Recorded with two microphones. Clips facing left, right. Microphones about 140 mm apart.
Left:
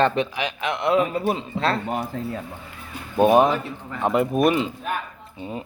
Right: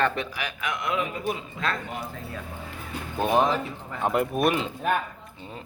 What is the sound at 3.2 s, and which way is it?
Speech, 15° left (ahead or behind).